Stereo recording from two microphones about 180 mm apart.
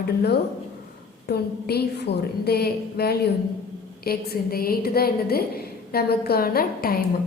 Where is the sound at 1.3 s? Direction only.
65° left (ahead or behind).